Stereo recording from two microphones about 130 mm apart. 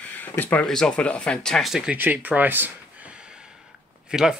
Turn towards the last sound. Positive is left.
turn(degrees=-5)  # may be behind; listen again after turning